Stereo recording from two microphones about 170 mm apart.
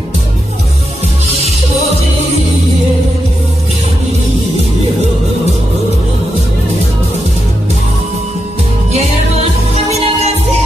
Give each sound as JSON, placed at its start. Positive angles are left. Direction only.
{"t": 9.8, "sound": "music", "side_deg": -40}